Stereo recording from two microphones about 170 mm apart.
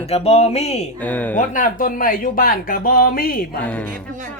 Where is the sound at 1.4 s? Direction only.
50° left (ahead or behind).